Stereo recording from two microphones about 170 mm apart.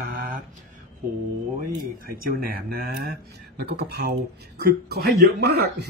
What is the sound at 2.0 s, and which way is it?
Speech, 60° right (ahead or behind).